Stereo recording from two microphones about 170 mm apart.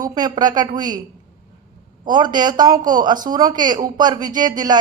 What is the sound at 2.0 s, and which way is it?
A woman's voice, 25° right (ahead or behind).